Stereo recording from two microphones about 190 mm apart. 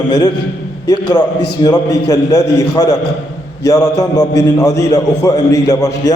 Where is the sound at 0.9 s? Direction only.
20° left (ahead or behind).